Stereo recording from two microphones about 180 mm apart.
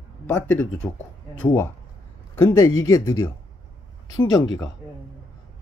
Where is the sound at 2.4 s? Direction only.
10° left (ahead or behind).